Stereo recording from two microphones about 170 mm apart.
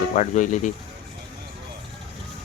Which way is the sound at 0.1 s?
45° left (ahead or behind).